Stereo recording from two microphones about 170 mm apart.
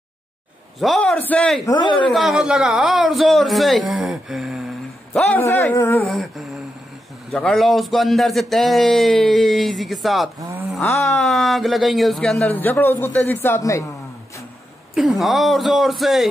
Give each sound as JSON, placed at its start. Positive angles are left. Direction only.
{"t": 0.7, "sound": "a man's voice", "side_deg": 0}
{"t": 1.7, "sound": "a woman's voice", "side_deg": 30}
{"t": 2.0, "sound": "a man's voice", "side_deg": 0}
{"t": 5.1, "sound": "a man's voice", "side_deg": 10}
{"t": 6.0, "sound": "a man's voice", "side_deg": 0}
{"t": 10.8, "sound": "a man's voice", "side_deg": 15}
{"t": 11.1, "sound": "a man's voice", "side_deg": 0}
{"t": 15.0, "sound": "a man's voice", "side_deg": 0}